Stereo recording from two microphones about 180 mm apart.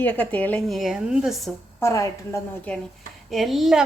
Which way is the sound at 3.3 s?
Centre (ahead or behind).